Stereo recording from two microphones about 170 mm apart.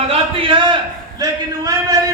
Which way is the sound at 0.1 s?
30° right (ahead or behind).